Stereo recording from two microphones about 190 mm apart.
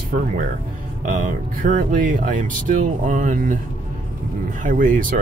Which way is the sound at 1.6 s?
45° right (ahead or behind).